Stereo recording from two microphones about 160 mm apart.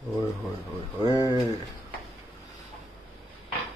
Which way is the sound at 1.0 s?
25° left (ahead or behind).